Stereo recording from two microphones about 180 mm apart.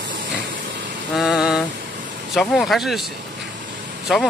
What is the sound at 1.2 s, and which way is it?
Speech, centre (ahead or behind).